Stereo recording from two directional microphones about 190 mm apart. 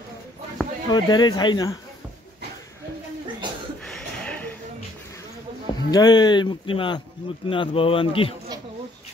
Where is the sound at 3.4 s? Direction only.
25° right (ahead or behind).